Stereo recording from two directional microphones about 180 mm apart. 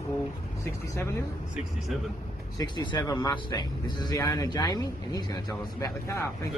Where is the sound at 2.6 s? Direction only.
20° left (ahead or behind).